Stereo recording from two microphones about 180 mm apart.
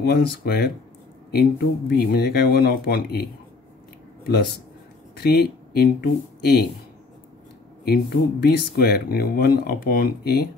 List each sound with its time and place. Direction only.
0.0 s speech: 60° left (ahead or behind)
5.1 s speech: 60° left (ahead or behind)
7.8 s speech: 60° left (ahead or behind)